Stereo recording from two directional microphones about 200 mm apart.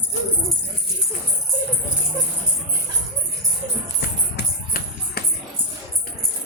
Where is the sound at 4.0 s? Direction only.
50° left (ahead or behind).